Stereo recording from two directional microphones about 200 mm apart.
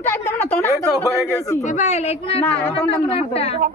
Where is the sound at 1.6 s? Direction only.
35° left (ahead or behind).